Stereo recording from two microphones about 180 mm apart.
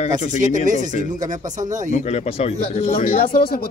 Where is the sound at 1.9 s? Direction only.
40° left (ahead or behind).